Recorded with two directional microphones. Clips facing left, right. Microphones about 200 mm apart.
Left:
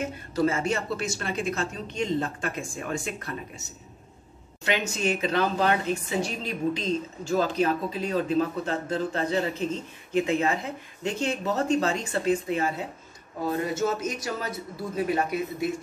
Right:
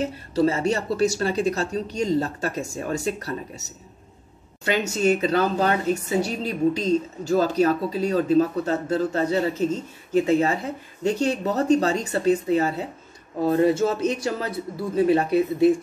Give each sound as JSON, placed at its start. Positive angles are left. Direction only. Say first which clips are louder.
{"t": 0.0, "sound": "a woman's voice", "louder": "right 4 dB", "side_deg": -30}